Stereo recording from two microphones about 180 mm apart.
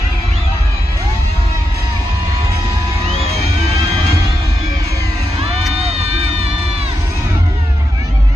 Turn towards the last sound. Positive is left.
turn(degrees=-35)  # may be behind; listen again after turning